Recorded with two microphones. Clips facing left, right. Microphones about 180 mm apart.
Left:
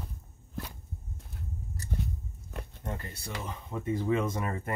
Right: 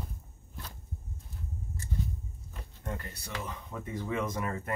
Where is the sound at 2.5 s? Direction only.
65° left (ahead or behind).